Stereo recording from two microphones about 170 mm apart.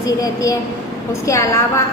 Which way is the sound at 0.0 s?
20° left (ahead or behind).